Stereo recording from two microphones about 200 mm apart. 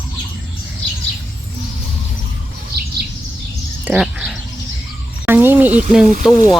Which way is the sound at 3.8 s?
5° right (ahead or behind).